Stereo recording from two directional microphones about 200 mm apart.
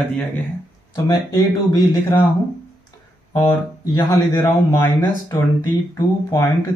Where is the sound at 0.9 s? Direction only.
15° left (ahead or behind).